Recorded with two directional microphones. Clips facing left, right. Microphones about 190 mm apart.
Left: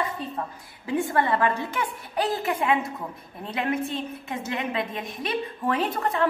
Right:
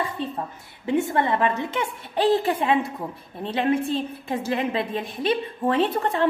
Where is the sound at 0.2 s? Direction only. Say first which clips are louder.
Right 3 dB; 30° right (ahead or behind).